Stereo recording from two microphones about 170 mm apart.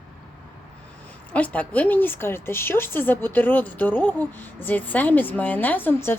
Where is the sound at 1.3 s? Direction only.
10° left (ahead or behind).